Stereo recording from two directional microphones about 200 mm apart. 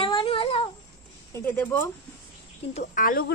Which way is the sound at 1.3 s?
10° left (ahead or behind).